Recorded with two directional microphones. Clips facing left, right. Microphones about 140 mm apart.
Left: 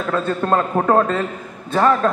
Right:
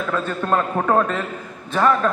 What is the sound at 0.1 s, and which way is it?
A man's voice, 30° left (ahead or behind).